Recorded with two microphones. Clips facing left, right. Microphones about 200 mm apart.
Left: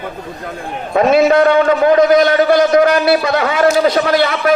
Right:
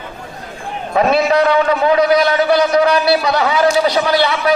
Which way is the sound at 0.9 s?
50° left (ahead or behind).